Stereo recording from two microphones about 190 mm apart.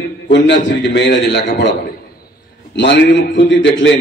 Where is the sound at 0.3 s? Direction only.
70° left (ahead or behind).